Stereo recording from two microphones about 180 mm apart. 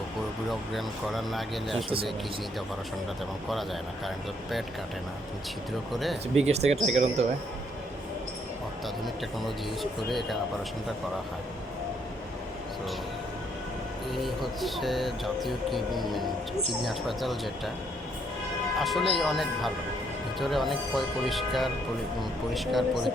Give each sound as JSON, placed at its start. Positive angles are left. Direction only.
{"t": 0.7, "sound": "speech", "side_deg": 0}
{"t": 5.9, "sound": "speech", "side_deg": 0}
{"t": 6.4, "sound": "speech", "side_deg": -35}
{"t": 10.1, "sound": "speech", "side_deg": 0}
{"t": 14.1, "sound": "speech", "side_deg": 0}
{"t": 18.8, "sound": "speech", "side_deg": 0}